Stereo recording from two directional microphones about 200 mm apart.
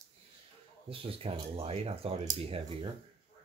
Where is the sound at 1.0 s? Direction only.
30° right (ahead or behind).